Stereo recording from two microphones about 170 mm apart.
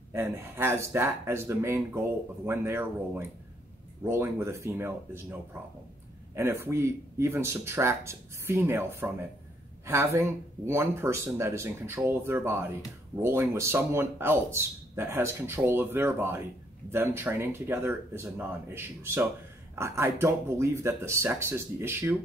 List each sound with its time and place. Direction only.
0.1 s speech: 15° right (ahead or behind)
6.3 s speech: 15° right (ahead or behind)
9.8 s speech: 15° right (ahead or behind)